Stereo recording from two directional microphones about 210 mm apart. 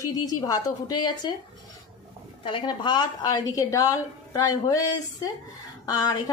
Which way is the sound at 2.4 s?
20° left (ahead or behind).